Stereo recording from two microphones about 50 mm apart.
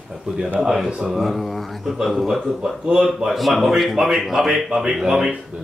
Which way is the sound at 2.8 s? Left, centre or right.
Centre.